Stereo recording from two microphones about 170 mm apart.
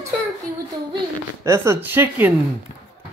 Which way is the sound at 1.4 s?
15° right (ahead or behind).